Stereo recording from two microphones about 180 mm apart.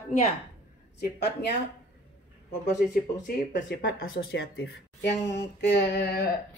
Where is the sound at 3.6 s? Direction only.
70° left (ahead or behind).